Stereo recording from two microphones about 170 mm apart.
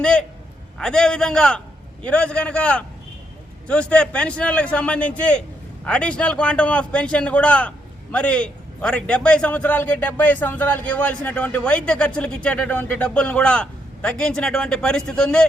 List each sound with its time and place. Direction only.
0.0 s a man's voice: 5° left (ahead or behind)